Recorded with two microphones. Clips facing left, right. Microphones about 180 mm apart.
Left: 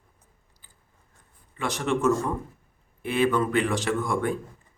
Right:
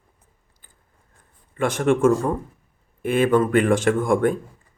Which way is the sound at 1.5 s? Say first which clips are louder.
Right 7 dB; 50° right (ahead or behind).